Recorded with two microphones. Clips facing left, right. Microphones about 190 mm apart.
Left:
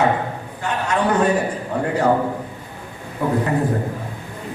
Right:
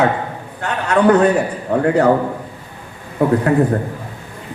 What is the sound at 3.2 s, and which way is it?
Speech, 65° right (ahead or behind).